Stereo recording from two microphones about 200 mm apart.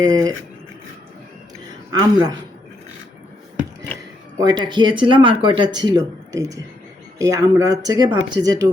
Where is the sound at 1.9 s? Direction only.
20° right (ahead or behind).